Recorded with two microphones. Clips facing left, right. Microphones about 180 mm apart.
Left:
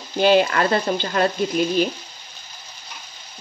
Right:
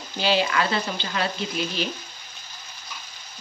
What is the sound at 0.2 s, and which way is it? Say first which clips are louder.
Speech: left 7 dB; 50° left (ahead or behind).